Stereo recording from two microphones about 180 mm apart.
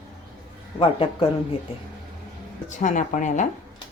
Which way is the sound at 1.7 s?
30° left (ahead or behind).